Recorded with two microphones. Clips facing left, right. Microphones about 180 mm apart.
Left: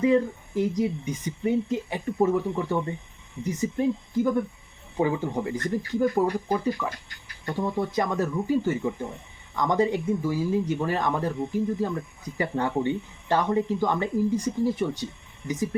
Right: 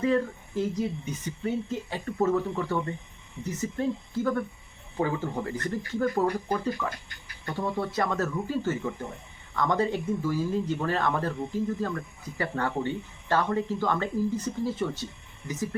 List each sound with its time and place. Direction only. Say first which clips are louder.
0.0 s speech: left 4 dB; 15° left (ahead or behind)